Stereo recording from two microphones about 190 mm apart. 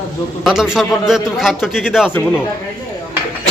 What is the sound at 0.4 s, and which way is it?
A man's voice, 5° right (ahead or behind).